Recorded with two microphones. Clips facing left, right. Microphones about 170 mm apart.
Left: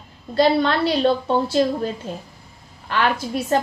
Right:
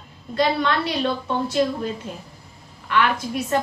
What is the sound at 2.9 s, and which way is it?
Speech, 35° left (ahead or behind).